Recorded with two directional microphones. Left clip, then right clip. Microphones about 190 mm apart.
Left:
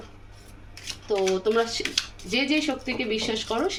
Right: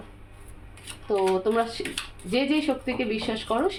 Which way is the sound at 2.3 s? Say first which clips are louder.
Right 1 dB; 30° right (ahead or behind).